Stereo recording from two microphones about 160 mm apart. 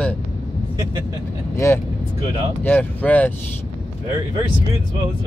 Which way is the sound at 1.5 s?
20° left (ahead or behind).